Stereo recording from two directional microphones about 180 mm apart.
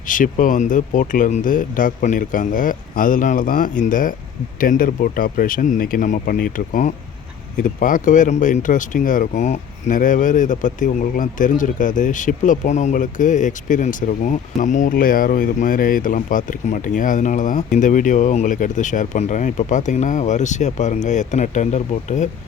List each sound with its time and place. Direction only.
0.1 s speech: 50° left (ahead or behind)